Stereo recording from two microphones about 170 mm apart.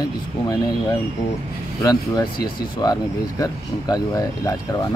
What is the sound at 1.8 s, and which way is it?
Speech, 20° left (ahead or behind).